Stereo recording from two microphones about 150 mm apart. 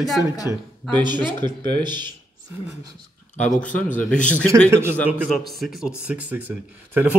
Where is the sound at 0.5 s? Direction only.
15° right (ahead or behind).